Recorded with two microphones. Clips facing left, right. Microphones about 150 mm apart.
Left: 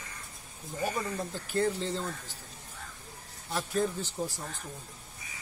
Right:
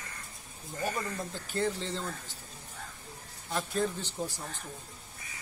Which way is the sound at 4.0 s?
40° left (ahead or behind).